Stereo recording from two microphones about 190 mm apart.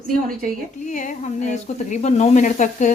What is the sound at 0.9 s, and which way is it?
Speech, 40° left (ahead or behind).